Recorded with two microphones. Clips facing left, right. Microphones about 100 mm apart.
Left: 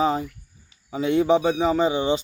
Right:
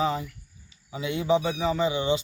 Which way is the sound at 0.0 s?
40° left (ahead or behind).